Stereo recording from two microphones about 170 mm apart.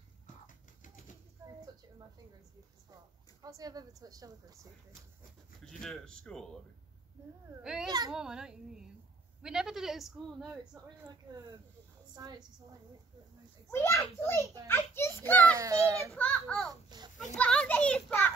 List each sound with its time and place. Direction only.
0.5 s a sound: 50° left (ahead or behind)
3.4 s speech: 20° right (ahead or behind)
5.6 s a woman's voice: 5° left (ahead or behind)
7.6 s a woman's voice: 5° right (ahead or behind)
12.2 s speech: 25° right (ahead or behind)
13.7 s a child's voice: 15° left (ahead or behind)
15.5 s a child's voice: 20° right (ahead or behind)
16.2 s a woman's voice: 5° left (ahead or behind)